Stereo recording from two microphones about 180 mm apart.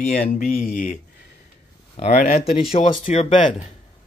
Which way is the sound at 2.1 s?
55° left (ahead or behind).